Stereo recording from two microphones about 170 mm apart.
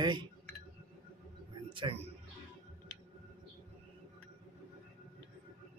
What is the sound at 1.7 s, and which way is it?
Speech, 30° right (ahead or behind).